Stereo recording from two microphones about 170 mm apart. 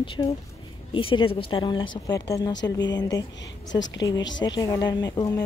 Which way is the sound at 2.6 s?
90° left.